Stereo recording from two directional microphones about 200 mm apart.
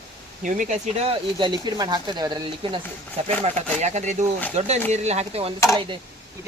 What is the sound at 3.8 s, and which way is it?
Speech, 35° right (ahead or behind).